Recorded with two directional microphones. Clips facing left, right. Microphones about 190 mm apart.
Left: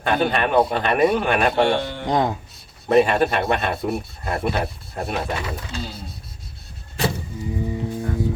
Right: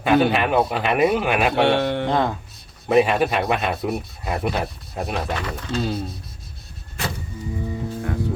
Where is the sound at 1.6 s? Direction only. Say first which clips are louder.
Right 2 dB; 65° right (ahead or behind).